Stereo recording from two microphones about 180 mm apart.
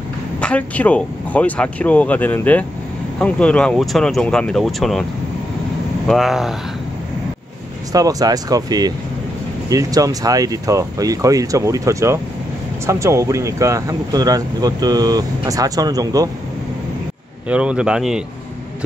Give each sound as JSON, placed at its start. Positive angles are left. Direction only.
{"t": 0.4, "sound": "speech", "side_deg": 5}
{"t": 6.0, "sound": "speech", "side_deg": 0}
{"t": 7.9, "sound": "speech", "side_deg": -20}
{"t": 17.5, "sound": "speech", "side_deg": -5}